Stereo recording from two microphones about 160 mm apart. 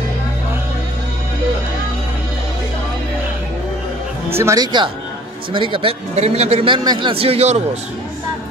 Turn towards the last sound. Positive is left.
turn(degrees=-40)  # may be behind; listen again after turning